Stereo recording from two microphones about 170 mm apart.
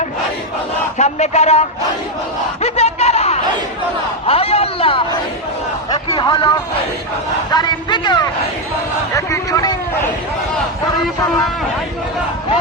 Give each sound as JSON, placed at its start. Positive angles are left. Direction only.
{"t": 0.9, "sound": "a man's voice", "side_deg": 40}
{"t": 2.6, "sound": "a sound", "side_deg": 40}
{"t": 4.3, "sound": "a man's voice", "side_deg": 35}
{"t": 6.1, "sound": "a man's voice", "side_deg": 30}